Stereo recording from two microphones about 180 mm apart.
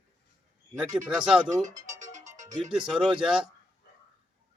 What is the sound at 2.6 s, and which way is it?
Speech, centre (ahead or behind).